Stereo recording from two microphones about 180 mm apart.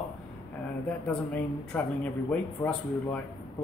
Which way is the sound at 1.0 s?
10° left (ahead or behind).